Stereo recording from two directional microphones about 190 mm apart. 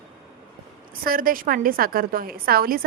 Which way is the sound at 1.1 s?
50° right (ahead or behind).